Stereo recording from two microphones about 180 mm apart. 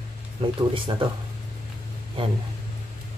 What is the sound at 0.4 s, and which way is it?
Speech, 30° right (ahead or behind).